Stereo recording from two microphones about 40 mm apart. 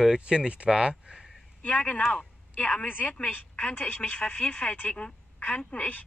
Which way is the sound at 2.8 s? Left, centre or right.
Left.